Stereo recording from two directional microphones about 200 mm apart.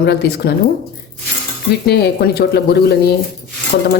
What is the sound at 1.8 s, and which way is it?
A woman's voice, 55° left (ahead or behind).